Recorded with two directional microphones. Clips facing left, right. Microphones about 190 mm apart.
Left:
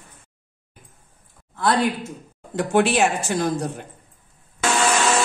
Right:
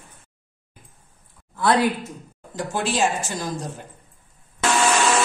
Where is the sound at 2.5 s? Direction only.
65° left (ahead or behind).